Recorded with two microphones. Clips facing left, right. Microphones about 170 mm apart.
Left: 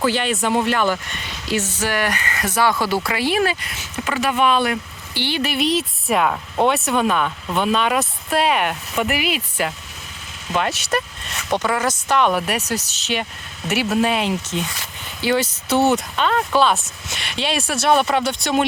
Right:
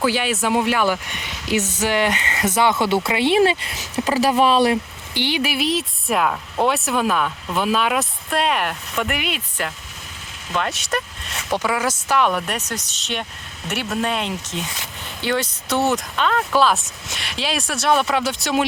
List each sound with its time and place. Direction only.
0.0 s speech: 10° right (ahead or behind); by 4.8 s 30° right (ahead or behind)
5.1 s speech: 15° right (ahead or behind)